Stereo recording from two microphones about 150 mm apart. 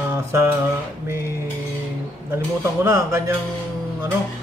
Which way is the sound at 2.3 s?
15° right (ahead or behind).